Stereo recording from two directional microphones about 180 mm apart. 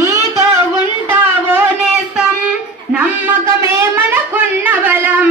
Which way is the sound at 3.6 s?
15° right (ahead or behind).